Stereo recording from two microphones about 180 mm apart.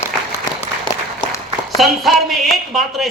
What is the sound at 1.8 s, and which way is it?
A man's voice, centre (ahead or behind).